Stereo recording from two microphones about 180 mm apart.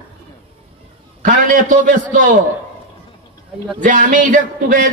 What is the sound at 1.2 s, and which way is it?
Speech, 45° right (ahead or behind).